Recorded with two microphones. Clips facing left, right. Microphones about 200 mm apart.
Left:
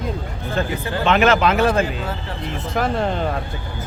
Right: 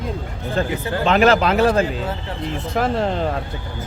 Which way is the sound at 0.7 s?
25° right (ahead or behind).